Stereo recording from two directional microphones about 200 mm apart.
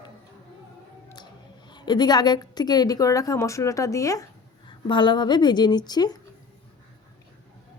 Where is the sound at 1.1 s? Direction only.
20° left (ahead or behind).